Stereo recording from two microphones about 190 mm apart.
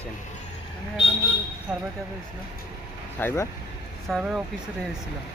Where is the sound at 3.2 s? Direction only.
10° left (ahead or behind).